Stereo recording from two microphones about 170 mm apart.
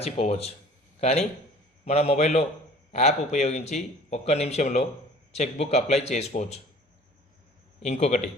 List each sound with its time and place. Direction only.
0.0 s a man's voice: 35° left (ahead or behind)
7.9 s a man's voice: 40° left (ahead or behind)